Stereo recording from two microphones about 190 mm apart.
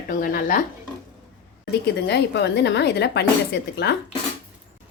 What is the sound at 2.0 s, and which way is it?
A woman's voice, 60° left (ahead or behind).